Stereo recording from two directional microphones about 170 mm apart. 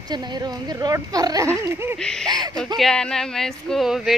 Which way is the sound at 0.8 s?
20° right (ahead or behind).